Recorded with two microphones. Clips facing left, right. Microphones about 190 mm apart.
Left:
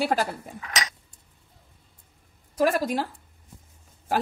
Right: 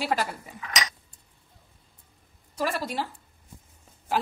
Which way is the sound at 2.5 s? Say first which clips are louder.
Left 6 dB; 45° left (ahead or behind).